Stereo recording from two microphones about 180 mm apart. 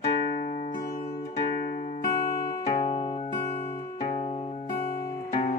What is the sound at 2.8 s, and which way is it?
Music, 25° left (ahead or behind).